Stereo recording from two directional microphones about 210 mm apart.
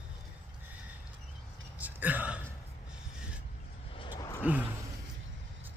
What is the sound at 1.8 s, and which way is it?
Burping, 10° right (ahead or behind).